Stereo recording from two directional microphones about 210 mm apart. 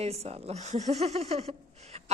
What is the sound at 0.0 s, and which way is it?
Speech, 30° right (ahead or behind).